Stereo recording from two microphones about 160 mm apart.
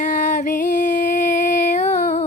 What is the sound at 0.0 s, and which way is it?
Music, 50° left (ahead or behind).